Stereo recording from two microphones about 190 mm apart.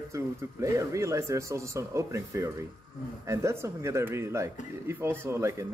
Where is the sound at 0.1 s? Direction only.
15° right (ahead or behind).